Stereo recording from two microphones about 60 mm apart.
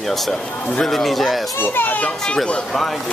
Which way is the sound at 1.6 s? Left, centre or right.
Left.